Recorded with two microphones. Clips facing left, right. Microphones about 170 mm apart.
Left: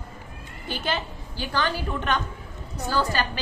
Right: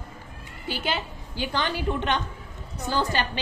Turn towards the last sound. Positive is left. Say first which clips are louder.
# left 1 dB
turn(degrees=-20)  # may be behind; listen again after turning